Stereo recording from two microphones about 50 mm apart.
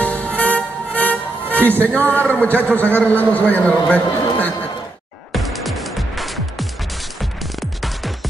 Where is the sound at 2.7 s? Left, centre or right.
Left.